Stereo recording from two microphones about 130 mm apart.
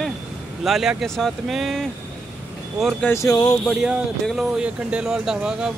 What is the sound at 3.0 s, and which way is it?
Speech, 25° left (ahead or behind).